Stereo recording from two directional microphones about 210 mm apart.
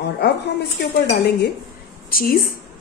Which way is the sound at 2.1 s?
45° left (ahead or behind).